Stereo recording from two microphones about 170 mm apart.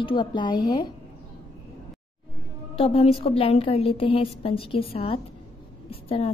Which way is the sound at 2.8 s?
35° left (ahead or behind).